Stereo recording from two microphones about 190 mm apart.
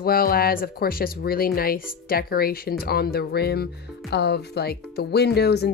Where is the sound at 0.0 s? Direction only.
50° left (ahead or behind).